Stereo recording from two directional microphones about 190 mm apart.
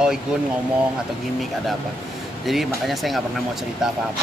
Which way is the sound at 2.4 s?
Centre (ahead or behind).